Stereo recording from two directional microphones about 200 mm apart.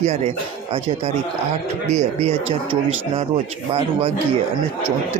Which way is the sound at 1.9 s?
35° right (ahead or behind).